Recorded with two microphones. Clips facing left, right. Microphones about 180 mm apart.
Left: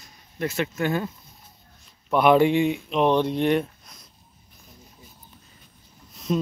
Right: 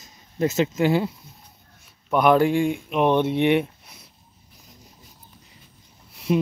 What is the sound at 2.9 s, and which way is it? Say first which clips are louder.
Speech: right 2 dB; 10° right (ahead or behind).